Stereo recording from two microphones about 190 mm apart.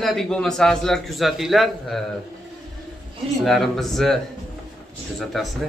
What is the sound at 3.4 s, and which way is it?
A man's voice, centre (ahead or behind).